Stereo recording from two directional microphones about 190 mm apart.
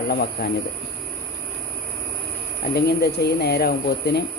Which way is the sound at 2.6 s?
60° left (ahead or behind).